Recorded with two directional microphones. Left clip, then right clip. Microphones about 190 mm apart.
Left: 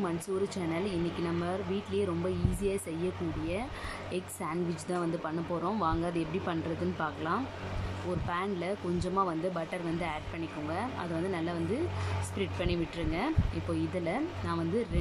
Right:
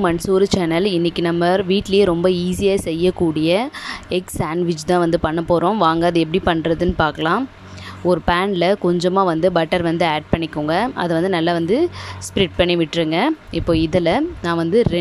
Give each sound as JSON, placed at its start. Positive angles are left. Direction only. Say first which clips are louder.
{"t": 0.0, "sound": "speech", "louder": "right 17 dB", "side_deg": -50}